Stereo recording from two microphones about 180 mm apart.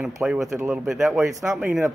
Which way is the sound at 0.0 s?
5° right (ahead or behind).